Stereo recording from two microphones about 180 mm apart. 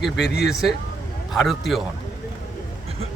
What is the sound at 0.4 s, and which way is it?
A man's voice, centre (ahead or behind).